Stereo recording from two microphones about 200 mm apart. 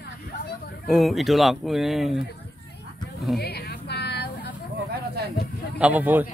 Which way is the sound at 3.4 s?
55° left (ahead or behind).